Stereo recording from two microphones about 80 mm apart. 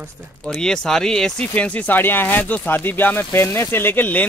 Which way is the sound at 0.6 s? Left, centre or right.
Centre.